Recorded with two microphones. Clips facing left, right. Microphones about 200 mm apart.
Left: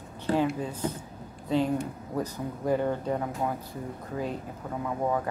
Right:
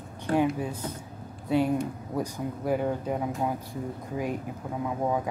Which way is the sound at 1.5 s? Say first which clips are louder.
Right 2 dB; 10° right (ahead or behind).